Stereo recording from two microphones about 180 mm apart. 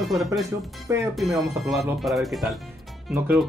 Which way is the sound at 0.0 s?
Centre (ahead or behind).